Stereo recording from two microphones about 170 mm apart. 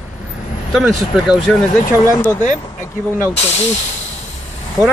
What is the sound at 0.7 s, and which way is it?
Speech, 5° right (ahead or behind).